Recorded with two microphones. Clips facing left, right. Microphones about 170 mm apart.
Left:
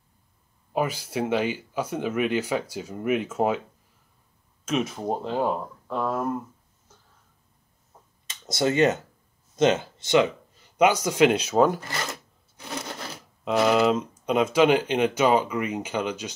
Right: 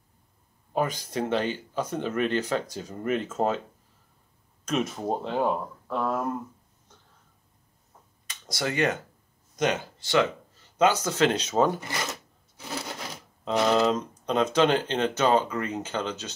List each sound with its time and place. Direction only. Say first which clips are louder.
0.7 s speech: left 1 dB; 10° left (ahead or behind)
4.6 s speech: left 1 dB; centre (ahead or behind)
8.3 s speech: left 6 dB; 25° left (ahead or behind); by 11.8 s 5° left (ahead or behind)
11.8 s a sound: even; 15° right (ahead or behind); by 16.3 s 10° left (ahead or behind)